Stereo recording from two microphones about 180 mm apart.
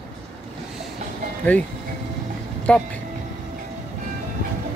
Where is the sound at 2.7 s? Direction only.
5° left (ahead or behind).